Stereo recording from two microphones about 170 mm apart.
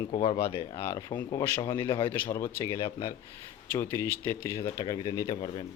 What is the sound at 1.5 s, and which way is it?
Speech, 15° left (ahead or behind).